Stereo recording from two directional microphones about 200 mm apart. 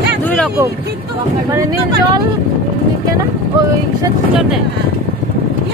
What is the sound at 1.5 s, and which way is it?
Speech, 20° right (ahead or behind).